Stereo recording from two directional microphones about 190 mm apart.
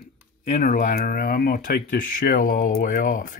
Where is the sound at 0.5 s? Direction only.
45° left (ahead or behind).